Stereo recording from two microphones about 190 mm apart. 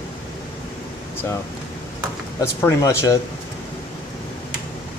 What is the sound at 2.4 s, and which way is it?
Speech, 15° left (ahead or behind).